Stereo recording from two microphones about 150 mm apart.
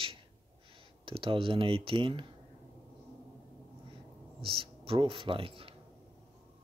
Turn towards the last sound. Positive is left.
turn(degrees=-40)  # may be behind; listen again after turning